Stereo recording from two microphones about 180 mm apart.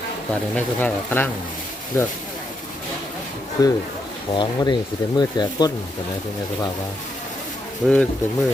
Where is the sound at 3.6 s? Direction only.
20° left (ahead or behind).